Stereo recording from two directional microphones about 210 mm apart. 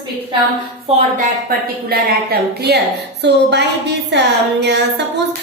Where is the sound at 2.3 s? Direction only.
50° right (ahead or behind).